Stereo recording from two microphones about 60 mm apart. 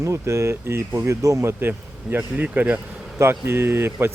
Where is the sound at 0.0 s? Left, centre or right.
Right.